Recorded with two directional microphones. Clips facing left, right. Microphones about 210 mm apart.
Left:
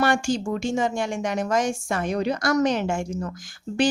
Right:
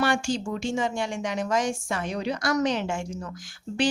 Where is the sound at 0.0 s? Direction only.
45° left (ahead or behind).